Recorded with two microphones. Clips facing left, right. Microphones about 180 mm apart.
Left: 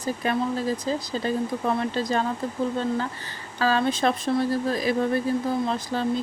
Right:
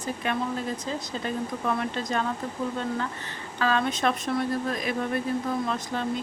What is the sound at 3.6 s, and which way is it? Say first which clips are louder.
Speech: left 3 dB; 35° left (ahead or behind).